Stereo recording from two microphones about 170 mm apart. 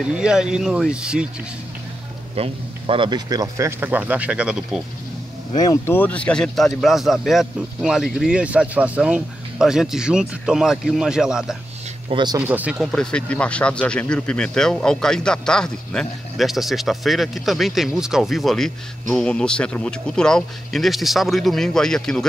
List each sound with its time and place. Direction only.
0.0 s speech: 5° right (ahead or behind)
2.3 s speech: 35° right (ahead or behind); by 4.8 s 5° right (ahead or behind)
5.6 s speech: 20° left (ahead or behind); by 11.5 s 5° right (ahead or behind)
12.1 s speech: 25° right (ahead or behind)
12.4 s speech: 10° right (ahead or behind)
12.9 s speech: 5° left (ahead or behind)